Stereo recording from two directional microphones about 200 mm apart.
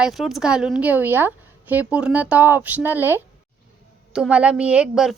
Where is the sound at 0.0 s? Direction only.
Centre (ahead or behind).